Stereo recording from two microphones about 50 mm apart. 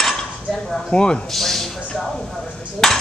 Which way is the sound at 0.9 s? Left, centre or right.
Centre.